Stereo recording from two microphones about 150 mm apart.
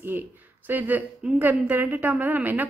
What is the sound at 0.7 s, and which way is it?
A woman's voice, 10° right (ahead or behind).